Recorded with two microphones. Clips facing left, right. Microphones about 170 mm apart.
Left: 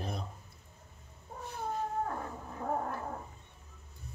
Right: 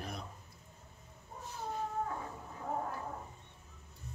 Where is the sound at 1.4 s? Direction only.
60° left (ahead or behind).